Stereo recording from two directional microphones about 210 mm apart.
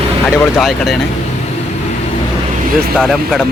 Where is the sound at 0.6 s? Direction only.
Centre (ahead or behind).